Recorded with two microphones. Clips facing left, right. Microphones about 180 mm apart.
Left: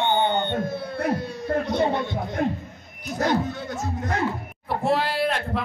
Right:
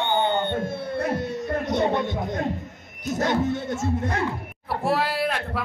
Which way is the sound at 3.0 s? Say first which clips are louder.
Even; 20° right (ahead or behind).